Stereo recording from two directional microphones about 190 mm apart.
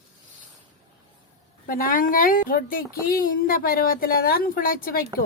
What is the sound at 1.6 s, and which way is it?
A woman's voice, 45° left (ahead or behind).